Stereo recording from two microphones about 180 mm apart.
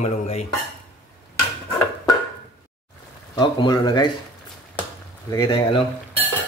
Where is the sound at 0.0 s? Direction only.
35° left (ahead or behind).